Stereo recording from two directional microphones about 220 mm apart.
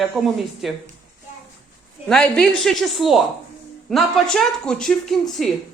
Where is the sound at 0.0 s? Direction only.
Centre (ahead or behind).